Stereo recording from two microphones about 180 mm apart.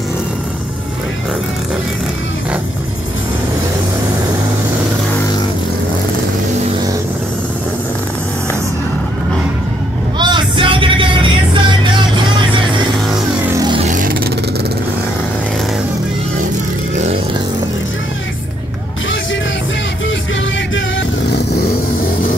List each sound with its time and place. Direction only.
10.1 s vehicle: 25° right (ahead or behind)
11.5 s music: 25° right (ahead or behind)
13.9 s vehicle: 50° right (ahead or behind)